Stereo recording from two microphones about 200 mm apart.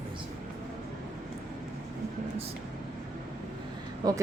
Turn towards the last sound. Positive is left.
turn(degrees=-20)  # may be behind; listen again after turning